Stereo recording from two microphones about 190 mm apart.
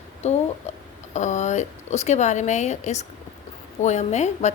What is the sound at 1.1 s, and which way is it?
Speech, 40° left (ahead or behind).